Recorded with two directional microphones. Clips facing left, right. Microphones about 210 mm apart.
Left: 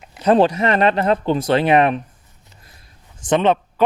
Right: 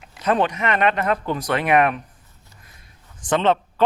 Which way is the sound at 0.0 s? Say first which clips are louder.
Left 6 dB; 25° left (ahead or behind).